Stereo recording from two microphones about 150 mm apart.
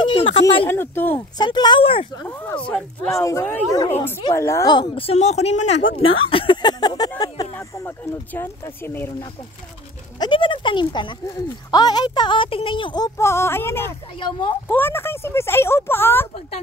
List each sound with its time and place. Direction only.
0.0 s a sound: 35° left (ahead or behind)
0.7 s speech: 15° left (ahead or behind)
1.4 s speech: 30° left (ahead or behind)
2.1 s a woman's voice: 15° left (ahead or behind)
4.7 s a woman's voice: 40° left (ahead or behind)
6.2 s speech: 35° left (ahead or behind)
7.5 s speech: 15° left (ahead or behind)
10.1 s a woman's voice: 30° left (ahead or behind); by 16.3 s 15° left (ahead or behind)